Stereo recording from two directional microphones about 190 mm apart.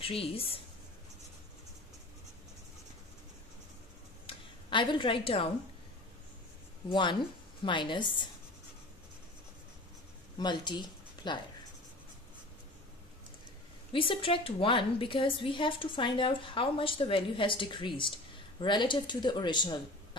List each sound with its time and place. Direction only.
0.0 s a woman's voice: 30° left (ahead or behind)
4.3 s speech: 25° left (ahead or behind)
6.9 s a woman's voice: 25° left (ahead or behind)
10.4 s speech: 25° left (ahead or behind)
13.9 s a woman's voice: 25° left (ahead or behind)